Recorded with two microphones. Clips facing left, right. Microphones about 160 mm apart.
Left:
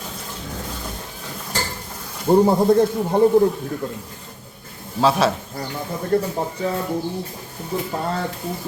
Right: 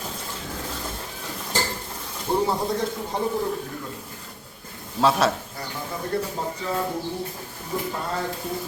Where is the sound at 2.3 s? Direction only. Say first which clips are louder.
Left 9 dB; 45° left (ahead or behind).